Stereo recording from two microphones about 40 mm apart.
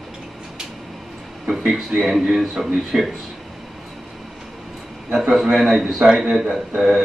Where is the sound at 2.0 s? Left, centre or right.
Centre.